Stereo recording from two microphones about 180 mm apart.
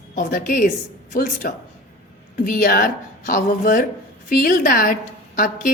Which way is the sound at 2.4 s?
50° left (ahead or behind).